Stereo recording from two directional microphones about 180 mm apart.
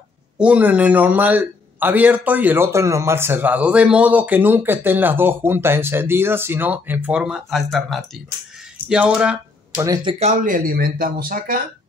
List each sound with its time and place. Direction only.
0.4 s a man's voice: 5° right (ahead or behind)
9.8 s speech: 20° right (ahead or behind)
10.1 s speech: 40° right (ahead or behind)